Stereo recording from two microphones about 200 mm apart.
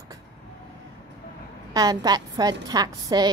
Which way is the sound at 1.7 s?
20° right (ahead or behind).